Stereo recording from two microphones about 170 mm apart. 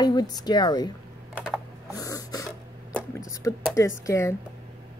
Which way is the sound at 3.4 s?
15° left (ahead or behind).